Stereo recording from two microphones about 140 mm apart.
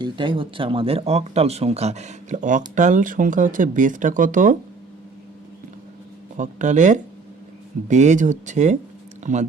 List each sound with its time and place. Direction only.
0.0 s speech: 35° right (ahead or behind); by 4.5 s 70° right (ahead or behind)
6.3 s speech: 65° right (ahead or behind)